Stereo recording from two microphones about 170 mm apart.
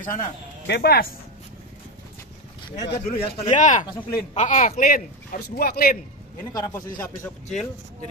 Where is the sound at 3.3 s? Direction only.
45° left (ahead or behind); by 5.9 s 60° left (ahead or behind).